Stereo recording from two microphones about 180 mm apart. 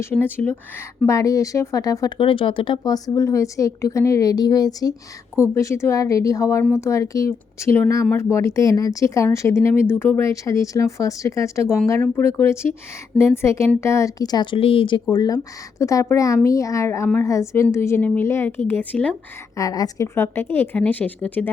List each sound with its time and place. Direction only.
0.0 s speech: 10° left (ahead or behind)
19.5 s speech: 20° left (ahead or behind)